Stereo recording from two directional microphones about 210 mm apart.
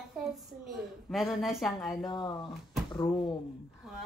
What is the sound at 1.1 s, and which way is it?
Speech, centre (ahead or behind).